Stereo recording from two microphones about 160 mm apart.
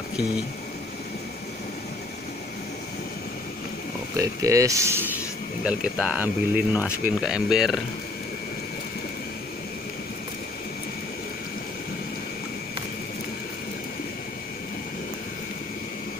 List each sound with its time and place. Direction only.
4.2 s speech: 20° right (ahead or behind)
5.6 s speech: 5° right (ahead or behind)